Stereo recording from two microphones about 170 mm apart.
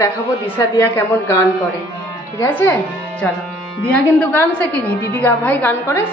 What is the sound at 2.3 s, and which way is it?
A woman's voice, 15° left (ahead or behind).